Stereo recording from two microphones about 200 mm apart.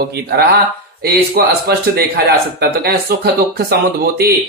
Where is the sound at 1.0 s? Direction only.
50° right (ahead or behind).